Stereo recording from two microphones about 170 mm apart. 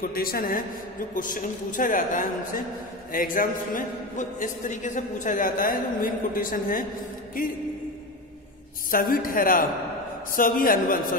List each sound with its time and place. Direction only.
0.0 s a woman's voice: 60° left (ahead or behind)
8.9 s a woman's voice: 55° left (ahead or behind)